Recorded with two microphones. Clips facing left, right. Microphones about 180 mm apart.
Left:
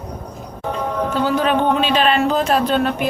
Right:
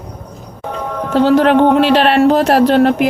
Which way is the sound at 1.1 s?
90° right.